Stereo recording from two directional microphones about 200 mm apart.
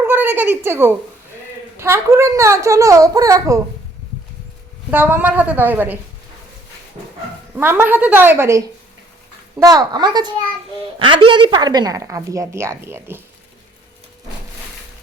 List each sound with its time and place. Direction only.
0.0 s a sound: 10° right (ahead or behind)
1.7 s a woman's voice: 15° right (ahead or behind)
4.9 s a woman's voice: 10° right (ahead or behind)
7.5 s a woman's voice: 10° right (ahead or behind)